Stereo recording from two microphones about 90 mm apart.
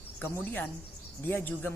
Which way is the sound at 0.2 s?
20° left (ahead or behind).